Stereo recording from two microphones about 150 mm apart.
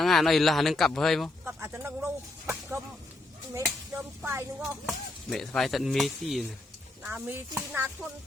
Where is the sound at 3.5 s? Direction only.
20° right (ahead or behind).